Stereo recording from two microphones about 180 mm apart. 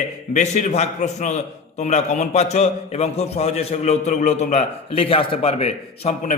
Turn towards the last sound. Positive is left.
turn(degrees=45)  # may be behind; listen again after turning